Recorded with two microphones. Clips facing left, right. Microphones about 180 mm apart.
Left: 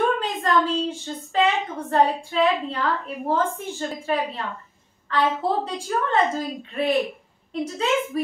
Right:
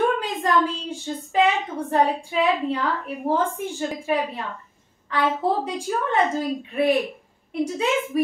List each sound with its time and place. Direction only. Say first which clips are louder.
0.2 s a woman's voice: even; 15° right (ahead or behind)